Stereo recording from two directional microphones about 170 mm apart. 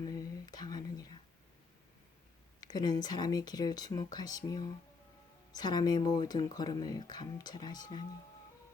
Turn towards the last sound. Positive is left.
turn(degrees=25)  # may be behind; listen again after turning